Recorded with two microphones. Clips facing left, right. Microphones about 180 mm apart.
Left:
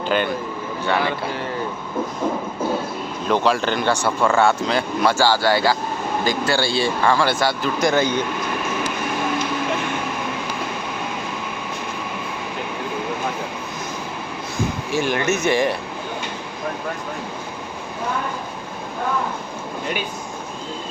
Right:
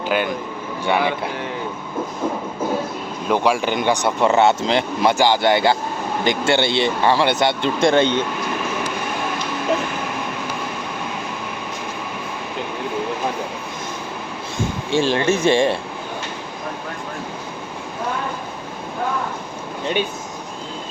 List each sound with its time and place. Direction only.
0.1 s speech: 10° right (ahead or behind)
3.2 s speech: 10° right (ahead or behind); by 8.2 s 25° right (ahead or behind)
14.8 s speech: 30° right (ahead or behind)